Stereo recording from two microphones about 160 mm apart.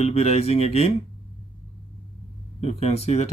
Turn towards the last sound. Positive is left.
turn(degrees=40)  # may be behind; listen again after turning